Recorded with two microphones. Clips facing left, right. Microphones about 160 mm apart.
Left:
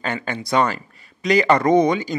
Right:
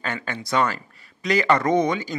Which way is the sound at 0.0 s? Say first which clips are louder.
Left 4 dB; 20° left (ahead or behind).